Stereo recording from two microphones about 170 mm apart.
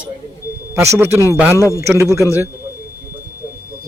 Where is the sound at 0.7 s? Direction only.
15° right (ahead or behind).